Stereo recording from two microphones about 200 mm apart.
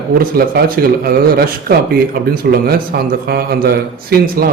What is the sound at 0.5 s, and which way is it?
Speech, 50° right (ahead or behind).